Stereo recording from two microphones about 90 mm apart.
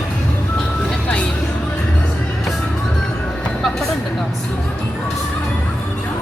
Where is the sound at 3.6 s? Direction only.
Centre (ahead or behind).